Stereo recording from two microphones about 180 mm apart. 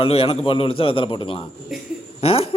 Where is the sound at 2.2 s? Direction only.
35° left (ahead or behind).